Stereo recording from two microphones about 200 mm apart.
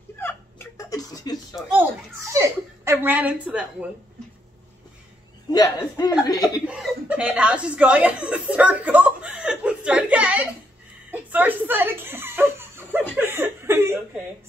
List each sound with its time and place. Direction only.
0.2 s hiccup: 10° left (ahead or behind)
1.5 s a sound: 5° right (ahead or behind)
2.3 s speech: 15° right (ahead or behind)
5.5 s speech: 15° left (ahead or behind)
6.6 s speech: 5° right (ahead or behind)
11.1 s a sound: 10° right (ahead or behind)
13.1 s speech: 10° right (ahead or behind)